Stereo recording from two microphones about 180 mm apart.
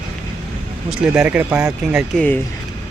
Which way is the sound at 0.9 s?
5° right (ahead or behind).